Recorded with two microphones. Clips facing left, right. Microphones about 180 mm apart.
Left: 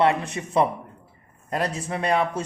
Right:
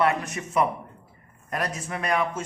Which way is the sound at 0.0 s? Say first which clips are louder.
Left 3 dB; 30° left (ahead or behind).